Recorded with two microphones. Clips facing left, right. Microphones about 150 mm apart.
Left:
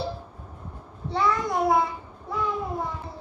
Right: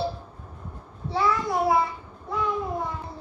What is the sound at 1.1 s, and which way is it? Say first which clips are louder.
Child singing: even; 5° right (ahead or behind).